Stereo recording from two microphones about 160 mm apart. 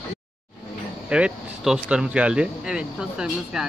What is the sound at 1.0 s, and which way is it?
Speech, 5° right (ahead or behind).